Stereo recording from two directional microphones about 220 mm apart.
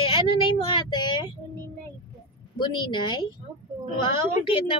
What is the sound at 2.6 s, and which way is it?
A woman's voice, 20° left (ahead or behind).